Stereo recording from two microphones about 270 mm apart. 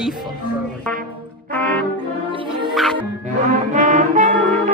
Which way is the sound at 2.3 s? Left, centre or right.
Centre.